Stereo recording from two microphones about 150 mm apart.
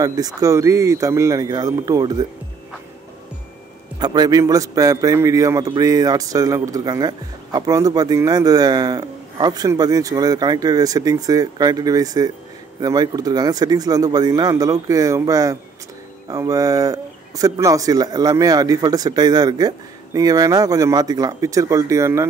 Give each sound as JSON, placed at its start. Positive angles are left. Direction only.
{"t": 0.0, "sound": "speech", "side_deg": -25}
{"t": 4.0, "sound": "speech", "side_deg": -25}